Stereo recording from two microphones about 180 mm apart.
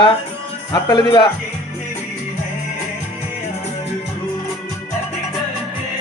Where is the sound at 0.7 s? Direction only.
25° left (ahead or behind).